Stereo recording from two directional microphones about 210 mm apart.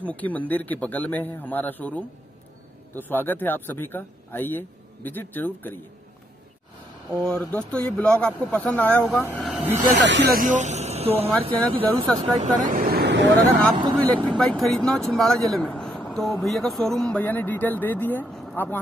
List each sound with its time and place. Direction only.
0.0 s speech: 5° left (ahead or behind)
7.2 s speech: centre (ahead or behind)
9.9 s speech: 60° right (ahead or behind)
14.1 s speech: 5° left (ahead or behind)